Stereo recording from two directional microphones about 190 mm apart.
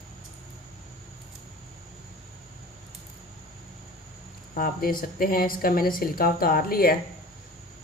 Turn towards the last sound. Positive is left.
turn(degrees=50)  # may be behind; listen again after turning